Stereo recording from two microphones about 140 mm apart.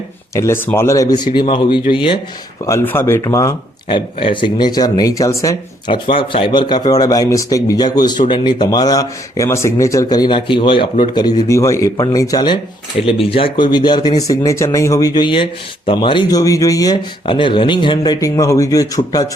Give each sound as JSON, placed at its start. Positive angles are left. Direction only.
{"t": 0.3, "sound": "speech", "side_deg": 20}
{"t": 2.6, "sound": "speech", "side_deg": 20}
{"t": 3.8, "sound": "speech", "side_deg": 40}
{"t": 5.9, "sound": "speech", "side_deg": 40}
{"t": 11.1, "sound": "speech", "side_deg": 25}
{"t": 13.1, "sound": "speech", "side_deg": 40}